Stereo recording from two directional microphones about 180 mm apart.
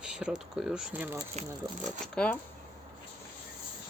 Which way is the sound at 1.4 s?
40° right (ahead or behind).